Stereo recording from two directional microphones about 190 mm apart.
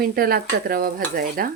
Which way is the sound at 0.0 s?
50° right (ahead or behind).